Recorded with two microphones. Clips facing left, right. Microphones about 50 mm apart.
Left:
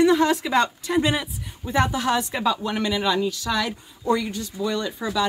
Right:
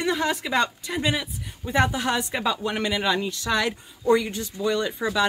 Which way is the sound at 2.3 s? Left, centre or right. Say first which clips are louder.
Left 2 dB; centre.